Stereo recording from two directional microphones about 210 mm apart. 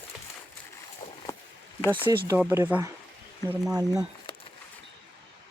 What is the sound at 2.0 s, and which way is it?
Speech, 10° right (ahead or behind).